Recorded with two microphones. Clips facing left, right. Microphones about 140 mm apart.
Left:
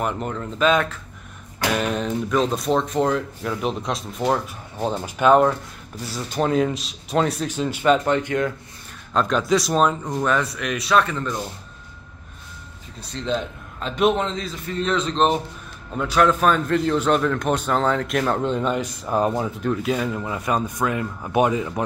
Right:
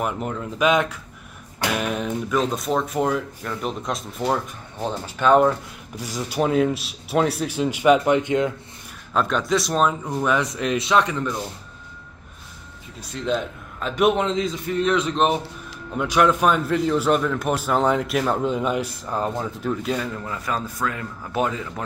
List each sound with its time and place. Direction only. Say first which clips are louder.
0.0 s speech: even; 5° right (ahead or behind)
0.7 s a man's voice: even; 15° right (ahead or behind); by 4.1 s centre (ahead or behind)
4.2 s speech: left 2 dB; 10° left (ahead or behind)
5.9 s a man's voice: right 1 dB; 10° right (ahead or behind)
9.1 s speech: left 2 dB; centre (ahead or behind)
10.5 s speech: even; 25° right (ahead or behind)
13.1 s a man's voice: right 1 dB; 5° right (ahead or behind)
19.0 s speech: left 7 dB; 15° left (ahead or behind)
19.6 s speech: left 1 dB; centre (ahead or behind); by 21.8 s 20° left (ahead or behind)